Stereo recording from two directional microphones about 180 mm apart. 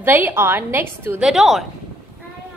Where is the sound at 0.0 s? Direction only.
10° right (ahead or behind).